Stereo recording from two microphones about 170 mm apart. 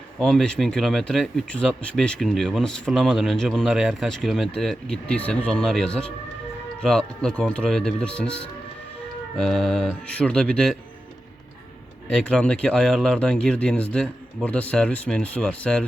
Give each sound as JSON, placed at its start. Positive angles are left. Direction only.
{"t": 0.2, "sound": "speech", "side_deg": 0}
{"t": 9.4, "sound": "speech", "side_deg": 0}
{"t": 12.0, "sound": "speech", "side_deg": 5}